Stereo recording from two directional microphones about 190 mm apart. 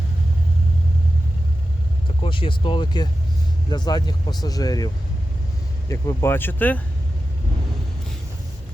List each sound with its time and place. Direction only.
2.2 s speech: 25° left (ahead or behind)
5.9 s speech: 15° left (ahead or behind)